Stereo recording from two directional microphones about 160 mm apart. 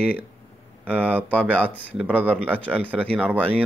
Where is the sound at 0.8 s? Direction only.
10° right (ahead or behind).